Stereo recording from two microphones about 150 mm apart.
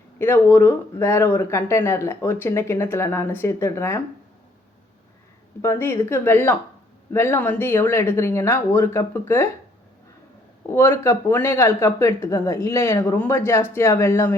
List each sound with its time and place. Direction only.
0.2 s speech: 15° left (ahead or behind)
5.6 s speech: 15° left (ahead or behind)
10.7 s speech: 15° left (ahead or behind)